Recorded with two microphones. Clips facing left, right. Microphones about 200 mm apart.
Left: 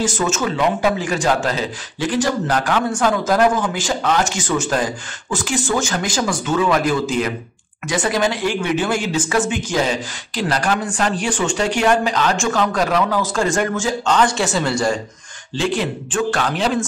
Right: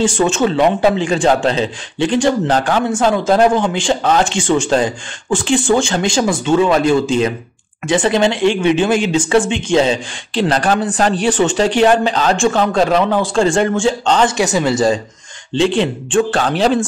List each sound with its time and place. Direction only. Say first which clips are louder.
0.0 s speech: right 6 dB; 30° right (ahead or behind)
14.3 s speech: right 4 dB; 15° right (ahead or behind)